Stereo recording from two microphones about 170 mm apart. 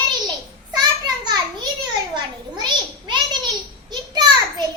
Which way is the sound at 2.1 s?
25° right (ahead or behind).